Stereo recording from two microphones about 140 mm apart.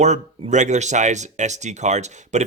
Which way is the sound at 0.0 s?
55° right (ahead or behind).